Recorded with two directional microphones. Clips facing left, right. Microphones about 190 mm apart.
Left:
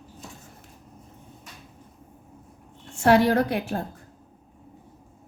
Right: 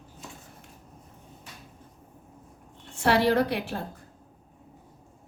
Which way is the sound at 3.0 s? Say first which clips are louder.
Left 3 dB; 50° left (ahead or behind).